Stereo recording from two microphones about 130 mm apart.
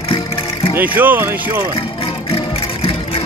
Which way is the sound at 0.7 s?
15° right (ahead or behind).